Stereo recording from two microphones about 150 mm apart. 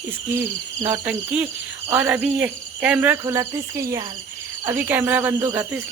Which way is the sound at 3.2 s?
20° right (ahead or behind).